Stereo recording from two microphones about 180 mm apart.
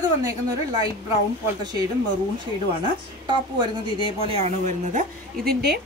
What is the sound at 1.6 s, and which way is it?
Speech, 20° right (ahead or behind).